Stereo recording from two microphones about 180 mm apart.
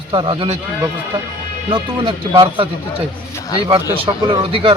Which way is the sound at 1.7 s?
30° right (ahead or behind).